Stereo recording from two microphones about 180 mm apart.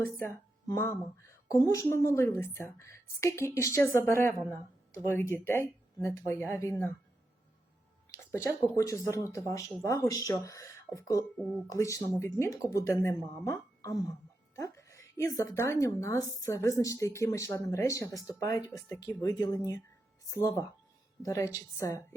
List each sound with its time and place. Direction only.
0.0 s speech: 15° left (ahead or behind)
8.1 s a sound: 15° left (ahead or behind)
8.7 s a woman's voice: 15° left (ahead or behind)